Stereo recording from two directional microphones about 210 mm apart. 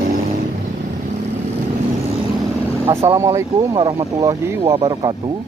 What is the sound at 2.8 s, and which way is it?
Vehicle, 25° right (ahead or behind).